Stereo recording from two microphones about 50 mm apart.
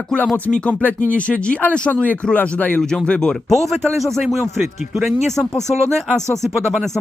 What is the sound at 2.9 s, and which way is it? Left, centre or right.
Speech, centre.